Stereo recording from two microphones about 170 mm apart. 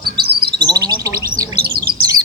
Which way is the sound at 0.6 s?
25° right (ahead or behind).